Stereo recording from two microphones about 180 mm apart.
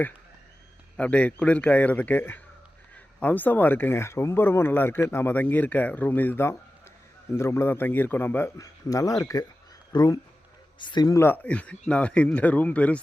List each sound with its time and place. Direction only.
0.9 s speech: 5° left (ahead or behind)